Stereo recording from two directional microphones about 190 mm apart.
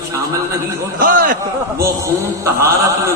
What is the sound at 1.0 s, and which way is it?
Speech, 45° right (ahead or behind).